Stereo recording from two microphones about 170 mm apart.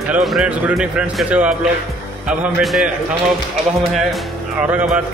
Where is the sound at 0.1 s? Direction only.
Centre (ahead or behind).